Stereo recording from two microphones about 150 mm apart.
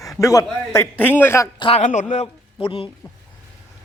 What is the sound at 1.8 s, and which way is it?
Speech, 55° left (ahead or behind).